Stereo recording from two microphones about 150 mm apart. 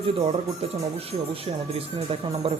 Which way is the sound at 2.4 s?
35° right (ahead or behind).